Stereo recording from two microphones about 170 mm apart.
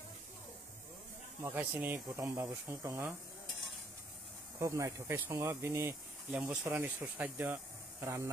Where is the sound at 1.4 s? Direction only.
10° right (ahead or behind).